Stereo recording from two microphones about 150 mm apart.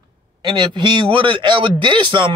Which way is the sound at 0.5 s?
30° right (ahead or behind).